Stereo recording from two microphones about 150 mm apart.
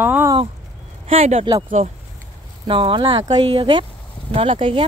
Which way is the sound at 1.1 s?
40° right (ahead or behind).